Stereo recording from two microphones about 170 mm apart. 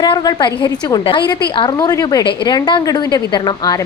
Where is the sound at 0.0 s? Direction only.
25° left (ahead or behind).